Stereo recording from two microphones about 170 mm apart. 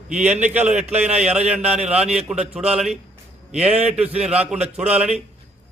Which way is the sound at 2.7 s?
5° right (ahead or behind).